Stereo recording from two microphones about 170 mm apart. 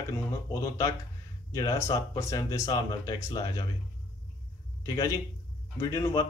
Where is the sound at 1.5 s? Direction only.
20° left (ahead or behind).